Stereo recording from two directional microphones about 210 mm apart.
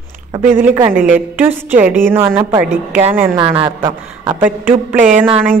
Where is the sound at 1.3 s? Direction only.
10° right (ahead or behind).